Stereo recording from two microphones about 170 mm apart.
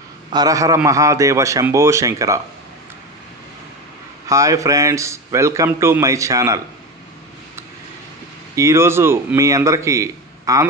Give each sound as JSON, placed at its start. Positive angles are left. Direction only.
{"t": 0.3, "sound": "a man's voice", "side_deg": -20}
{"t": 4.3, "sound": "a man's voice", "side_deg": -20}
{"t": 8.5, "sound": "a man's voice", "side_deg": -15}